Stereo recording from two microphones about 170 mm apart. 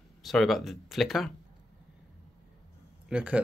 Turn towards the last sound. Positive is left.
turn(degrees=-5)  # may be behind; listen again after turning